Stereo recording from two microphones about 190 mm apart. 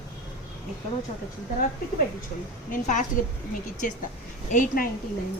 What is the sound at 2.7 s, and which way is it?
Speech, 40° left (ahead or behind).